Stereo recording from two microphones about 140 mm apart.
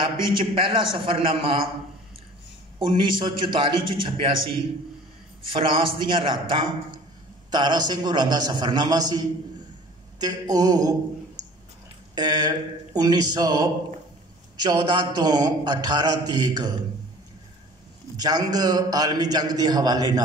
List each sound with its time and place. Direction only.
0.0 s a man's voice: 40° right (ahead or behind)
2.8 s a man's voice: 35° right (ahead or behind)
12.2 s a man's voice: 30° right (ahead or behind)
18.1 s a man's voice: 25° right (ahead or behind)